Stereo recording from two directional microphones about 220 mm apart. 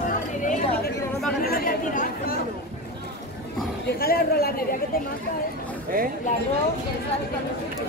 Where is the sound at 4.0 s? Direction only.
45° left (ahead or behind).